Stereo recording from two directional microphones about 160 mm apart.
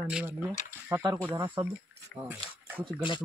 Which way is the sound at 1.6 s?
30° right (ahead or behind).